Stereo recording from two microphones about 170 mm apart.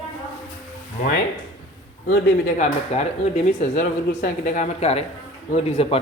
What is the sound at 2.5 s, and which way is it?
Speech, 40° left (ahead or behind).